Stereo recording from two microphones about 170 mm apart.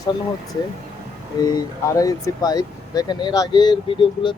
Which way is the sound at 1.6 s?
20° left (ahead or behind).